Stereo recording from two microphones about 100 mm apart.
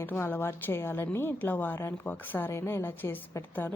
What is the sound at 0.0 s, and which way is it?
A woman's voice, 20° left (ahead or behind).